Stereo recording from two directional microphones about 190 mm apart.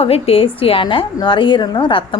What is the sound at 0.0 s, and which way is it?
A woman's voice, 30° left (ahead or behind).